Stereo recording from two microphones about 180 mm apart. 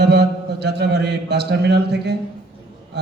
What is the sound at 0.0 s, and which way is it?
A man's voice, 65° right (ahead or behind).